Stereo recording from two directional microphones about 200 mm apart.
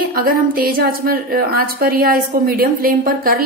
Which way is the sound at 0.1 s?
45° right (ahead or behind).